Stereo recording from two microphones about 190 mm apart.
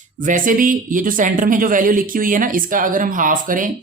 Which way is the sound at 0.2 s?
45° right (ahead or behind).